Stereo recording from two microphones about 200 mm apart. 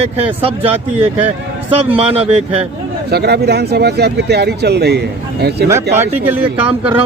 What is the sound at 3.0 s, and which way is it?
Speech, 55° right (ahead or behind).